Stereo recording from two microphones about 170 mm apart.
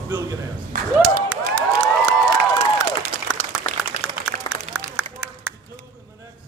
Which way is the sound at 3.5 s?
5° right (ahead or behind).